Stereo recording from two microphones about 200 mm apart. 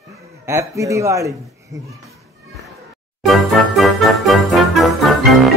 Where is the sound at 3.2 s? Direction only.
Centre (ahead or behind).